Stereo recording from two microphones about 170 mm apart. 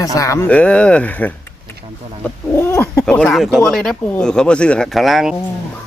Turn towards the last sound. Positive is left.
turn(degrees=0)  # may be behind; listen again after turning